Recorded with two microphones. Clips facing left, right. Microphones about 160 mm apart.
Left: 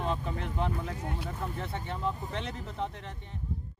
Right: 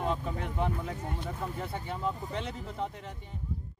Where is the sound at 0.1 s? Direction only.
10° right (ahead or behind).